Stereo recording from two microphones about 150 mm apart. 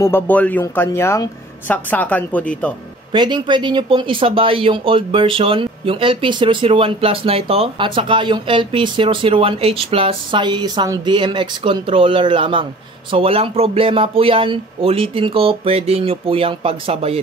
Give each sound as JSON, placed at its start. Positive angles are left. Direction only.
{"t": 0.0, "sound": "speech", "side_deg": 15}
{"t": 3.1, "sound": "speech", "side_deg": -30}